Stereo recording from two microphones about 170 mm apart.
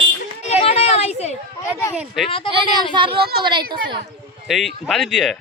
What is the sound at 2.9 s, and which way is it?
Speech, 30° right (ahead or behind).